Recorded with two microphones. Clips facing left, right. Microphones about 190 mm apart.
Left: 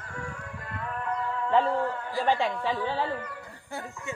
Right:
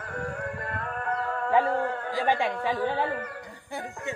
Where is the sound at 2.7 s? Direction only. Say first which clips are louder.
Right 2 dB; 55° right (ahead or behind).